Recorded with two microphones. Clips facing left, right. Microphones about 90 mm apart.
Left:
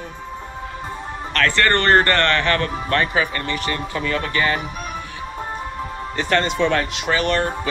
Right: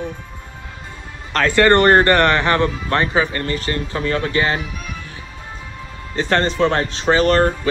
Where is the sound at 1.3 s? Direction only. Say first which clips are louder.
Right 5 dB; 20° right (ahead or behind).